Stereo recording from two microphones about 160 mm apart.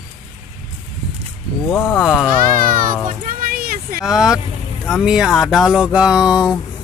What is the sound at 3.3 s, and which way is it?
Vehicle, 60° right (ahead or behind).